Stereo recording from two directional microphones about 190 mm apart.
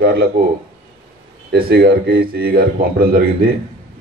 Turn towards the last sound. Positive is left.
turn(degrees=-50)  # may be behind; listen again after turning